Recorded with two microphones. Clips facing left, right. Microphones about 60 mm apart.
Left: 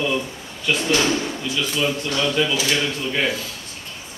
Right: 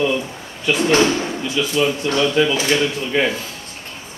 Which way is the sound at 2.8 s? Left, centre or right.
Centre.